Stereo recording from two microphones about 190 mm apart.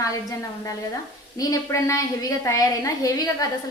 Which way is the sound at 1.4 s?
15° left (ahead or behind).